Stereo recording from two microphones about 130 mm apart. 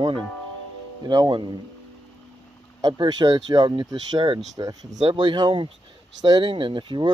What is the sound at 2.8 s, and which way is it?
Speech, 35° right (ahead or behind).